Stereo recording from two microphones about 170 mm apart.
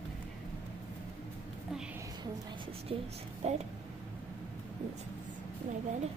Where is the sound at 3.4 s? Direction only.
40° right (ahead or behind).